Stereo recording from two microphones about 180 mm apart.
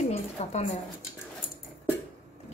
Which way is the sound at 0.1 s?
35° left (ahead or behind).